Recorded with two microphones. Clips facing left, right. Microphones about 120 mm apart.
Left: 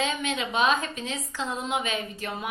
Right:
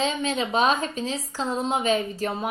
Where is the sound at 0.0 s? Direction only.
35° right (ahead or behind).